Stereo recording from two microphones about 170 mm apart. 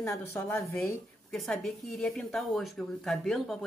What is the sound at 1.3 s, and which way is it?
A woman's voice, centre (ahead or behind).